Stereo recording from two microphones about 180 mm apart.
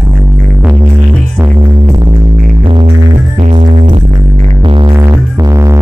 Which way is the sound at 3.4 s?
45° right (ahead or behind).